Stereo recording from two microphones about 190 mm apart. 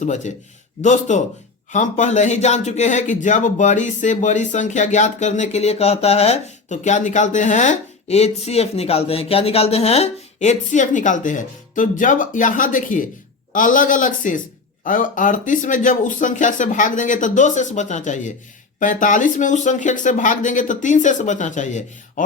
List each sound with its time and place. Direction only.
0.0 s a man's voice: 40° left (ahead or behind)